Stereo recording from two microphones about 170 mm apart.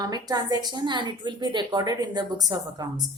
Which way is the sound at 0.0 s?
25° right (ahead or behind).